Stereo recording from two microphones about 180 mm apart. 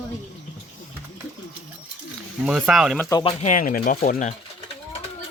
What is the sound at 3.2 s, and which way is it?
Speech, 40° left (ahead or behind).